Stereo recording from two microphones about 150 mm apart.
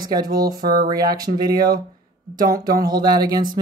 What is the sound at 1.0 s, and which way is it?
Speech, 80° right.